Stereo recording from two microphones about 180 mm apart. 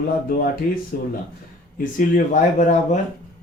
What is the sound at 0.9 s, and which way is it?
Speech, 55° left (ahead or behind).